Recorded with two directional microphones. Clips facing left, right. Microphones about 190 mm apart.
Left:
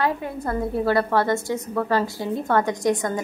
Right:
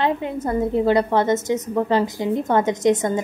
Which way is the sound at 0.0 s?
20° right (ahead or behind).